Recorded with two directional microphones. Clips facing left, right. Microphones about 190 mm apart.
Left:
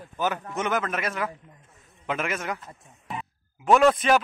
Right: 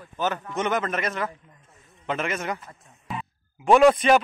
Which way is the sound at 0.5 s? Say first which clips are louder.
Right 2 dB; 5° left (ahead or behind).